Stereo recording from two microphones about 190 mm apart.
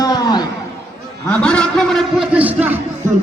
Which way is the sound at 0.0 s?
20° left (ahead or behind).